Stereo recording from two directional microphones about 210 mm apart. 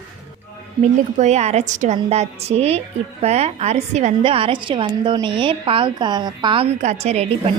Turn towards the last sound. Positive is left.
turn(degrees=-30)  # may be behind; listen again after turning